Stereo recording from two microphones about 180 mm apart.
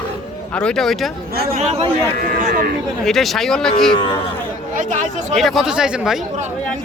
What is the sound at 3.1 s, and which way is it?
Speech, centre (ahead or behind).